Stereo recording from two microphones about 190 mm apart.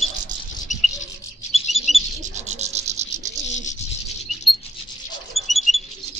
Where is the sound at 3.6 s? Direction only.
40° left (ahead or behind).